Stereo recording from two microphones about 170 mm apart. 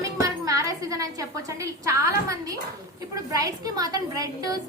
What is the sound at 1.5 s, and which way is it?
A woman's voice, 20° right (ahead or behind).